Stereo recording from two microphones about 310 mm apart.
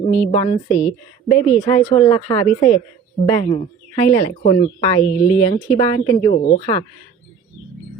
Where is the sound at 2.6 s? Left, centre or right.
Left.